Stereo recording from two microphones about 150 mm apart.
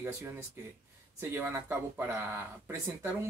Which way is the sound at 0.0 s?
20° right (ahead or behind).